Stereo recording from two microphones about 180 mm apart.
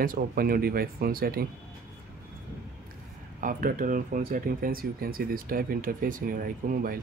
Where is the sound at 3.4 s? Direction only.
50° right (ahead or behind).